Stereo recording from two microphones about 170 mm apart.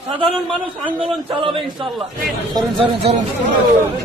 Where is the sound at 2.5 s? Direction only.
25° right (ahead or behind).